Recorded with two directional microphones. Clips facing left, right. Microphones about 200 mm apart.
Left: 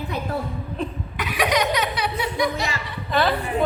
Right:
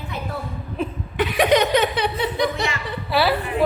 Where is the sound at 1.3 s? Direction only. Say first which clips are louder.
Right 4 dB; 50° right (ahead or behind).